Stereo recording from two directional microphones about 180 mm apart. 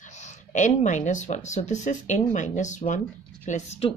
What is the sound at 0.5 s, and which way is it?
Speech, 40° left (ahead or behind).